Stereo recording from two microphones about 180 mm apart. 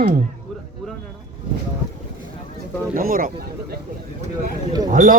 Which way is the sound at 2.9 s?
50° right (ahead or behind).